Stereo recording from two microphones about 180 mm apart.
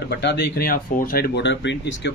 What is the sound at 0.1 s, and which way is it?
A man's voice, 65° left (ahead or behind).